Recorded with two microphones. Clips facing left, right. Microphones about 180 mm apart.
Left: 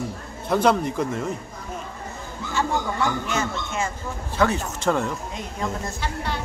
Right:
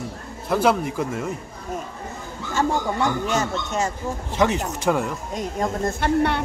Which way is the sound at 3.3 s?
40° right (ahead or behind).